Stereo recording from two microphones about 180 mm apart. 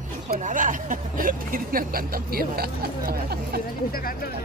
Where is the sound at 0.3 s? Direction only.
45° right (ahead or behind).